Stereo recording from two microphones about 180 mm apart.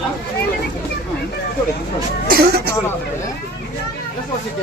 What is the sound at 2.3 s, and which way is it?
Speech, 60° right (ahead or behind).